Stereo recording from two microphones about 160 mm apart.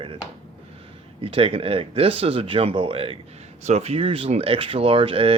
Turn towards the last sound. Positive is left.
turn(degrees=-35)  # may be behind; listen again after turning